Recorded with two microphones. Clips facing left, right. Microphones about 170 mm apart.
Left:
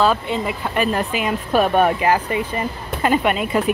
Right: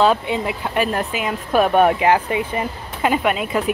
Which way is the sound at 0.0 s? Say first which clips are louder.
Right 1 dB; 20° right (ahead or behind).